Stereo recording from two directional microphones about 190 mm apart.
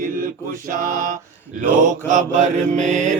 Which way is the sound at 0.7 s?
45° right (ahead or behind).